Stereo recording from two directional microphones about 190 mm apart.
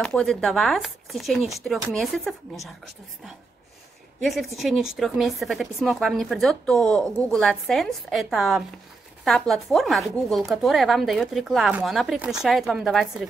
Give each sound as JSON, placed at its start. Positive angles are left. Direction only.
{"t": 0.0, "sound": "speech", "side_deg": 5}
{"t": 4.2, "sound": "speech", "side_deg": 0}